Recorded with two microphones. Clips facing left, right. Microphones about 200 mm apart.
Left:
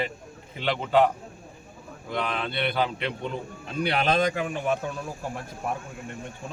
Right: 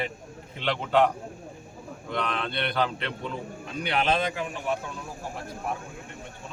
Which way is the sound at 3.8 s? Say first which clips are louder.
Left 3 dB; 40° left (ahead or behind).